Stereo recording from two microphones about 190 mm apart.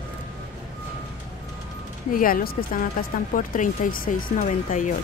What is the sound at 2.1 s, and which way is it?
Speech, 50° left (ahead or behind).